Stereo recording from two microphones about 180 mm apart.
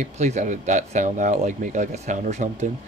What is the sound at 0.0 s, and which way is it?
Speech, 40° right (ahead or behind).